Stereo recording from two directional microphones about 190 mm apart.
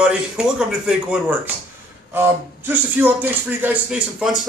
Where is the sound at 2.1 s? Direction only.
10° right (ahead or behind).